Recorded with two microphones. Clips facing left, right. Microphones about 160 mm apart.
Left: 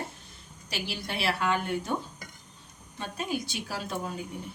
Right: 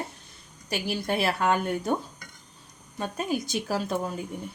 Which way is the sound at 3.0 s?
45° right (ahead or behind).